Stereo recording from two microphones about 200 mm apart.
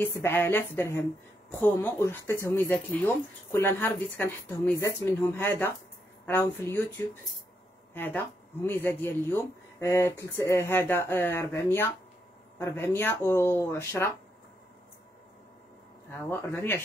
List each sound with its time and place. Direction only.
0.0 s speech: 10° left (ahead or behind)
7.9 s speech: 10° left (ahead or behind)
16.1 s speech: 10° left (ahead or behind)